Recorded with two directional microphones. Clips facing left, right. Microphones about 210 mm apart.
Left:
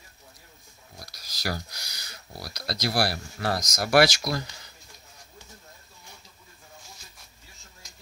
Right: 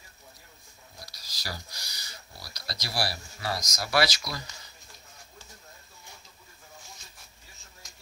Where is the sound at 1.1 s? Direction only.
55° left (ahead or behind).